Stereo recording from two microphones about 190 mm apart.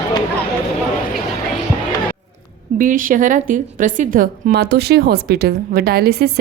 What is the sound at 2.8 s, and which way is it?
A woman's voice, 45° right (ahead or behind).